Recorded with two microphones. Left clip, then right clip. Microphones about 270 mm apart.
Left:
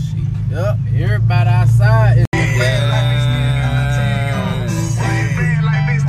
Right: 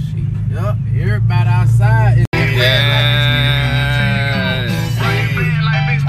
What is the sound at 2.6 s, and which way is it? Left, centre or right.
Music, centre.